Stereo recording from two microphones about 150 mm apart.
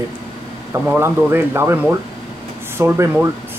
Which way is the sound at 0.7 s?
15° right (ahead or behind).